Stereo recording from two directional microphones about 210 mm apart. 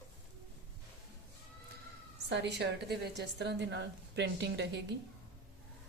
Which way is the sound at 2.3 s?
55° right (ahead or behind).